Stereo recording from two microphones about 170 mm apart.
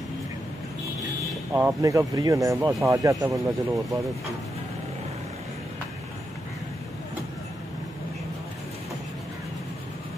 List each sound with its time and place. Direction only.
1.5 s speech: 10° right (ahead or behind)